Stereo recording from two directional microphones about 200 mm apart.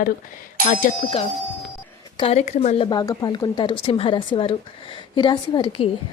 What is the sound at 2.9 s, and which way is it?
A woman's voice, 20° left (ahead or behind).